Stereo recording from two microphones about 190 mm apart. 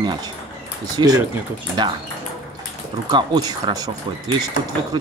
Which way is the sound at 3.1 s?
20° right (ahead or behind).